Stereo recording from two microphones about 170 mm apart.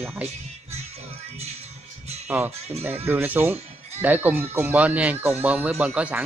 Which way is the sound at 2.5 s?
40° right (ahead or behind).